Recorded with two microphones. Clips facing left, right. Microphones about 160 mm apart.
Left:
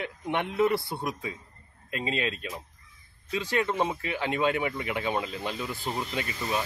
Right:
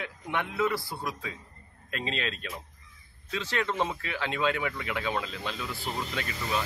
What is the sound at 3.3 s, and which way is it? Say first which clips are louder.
A man's voice: left 3 dB; 15° left (ahead or behind).